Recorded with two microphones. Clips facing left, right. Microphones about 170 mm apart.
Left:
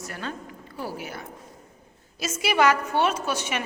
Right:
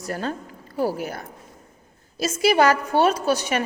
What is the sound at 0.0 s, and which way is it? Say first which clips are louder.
A woman's voice: right 6 dB; 40° right (ahead or behind).